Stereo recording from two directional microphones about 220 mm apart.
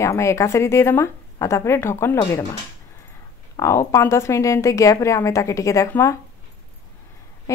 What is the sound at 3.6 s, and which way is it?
Speech, 15° left (ahead or behind).